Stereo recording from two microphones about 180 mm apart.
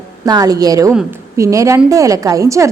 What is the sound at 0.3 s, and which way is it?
A woman's voice, 20° right (ahead or behind).